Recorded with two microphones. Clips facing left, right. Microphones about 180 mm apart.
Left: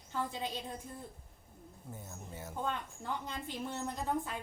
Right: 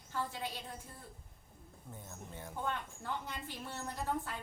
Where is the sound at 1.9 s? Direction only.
5° left (ahead or behind).